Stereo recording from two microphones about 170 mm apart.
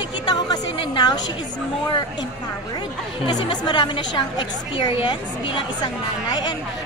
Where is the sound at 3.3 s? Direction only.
25° left (ahead or behind).